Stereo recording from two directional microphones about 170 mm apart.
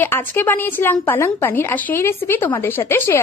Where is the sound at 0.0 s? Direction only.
10° left (ahead or behind).